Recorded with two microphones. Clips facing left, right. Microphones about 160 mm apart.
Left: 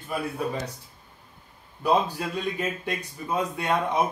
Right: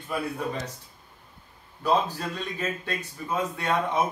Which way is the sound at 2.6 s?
15° left (ahead or behind).